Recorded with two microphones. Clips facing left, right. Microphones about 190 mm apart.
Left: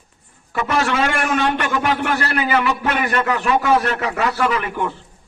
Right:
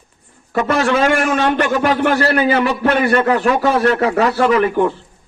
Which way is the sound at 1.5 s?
45° right (ahead or behind).